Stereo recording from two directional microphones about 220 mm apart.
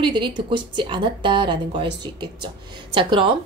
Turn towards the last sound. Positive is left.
turn(degrees=-20)  # may be behind; listen again after turning